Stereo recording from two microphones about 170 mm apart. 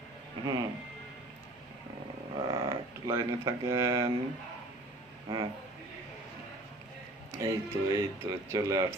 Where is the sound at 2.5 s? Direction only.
20° right (ahead or behind).